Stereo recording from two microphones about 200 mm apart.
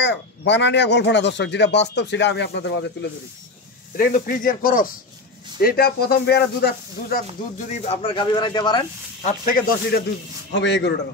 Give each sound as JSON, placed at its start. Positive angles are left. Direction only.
{"t": 0.0, "sound": "speech", "side_deg": 60}
{"t": 3.9, "sound": "speech", "side_deg": 45}
{"t": 7.8, "sound": "speech", "side_deg": 30}
{"t": 9.2, "sound": "speech", "side_deg": 45}
{"t": 10.5, "sound": "speech", "side_deg": 60}